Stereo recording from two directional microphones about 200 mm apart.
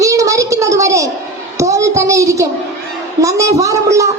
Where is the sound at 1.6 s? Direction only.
15° right (ahead or behind).